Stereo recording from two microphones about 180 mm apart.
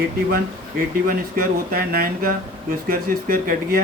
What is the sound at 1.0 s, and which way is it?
Speech, 55° right (ahead or behind).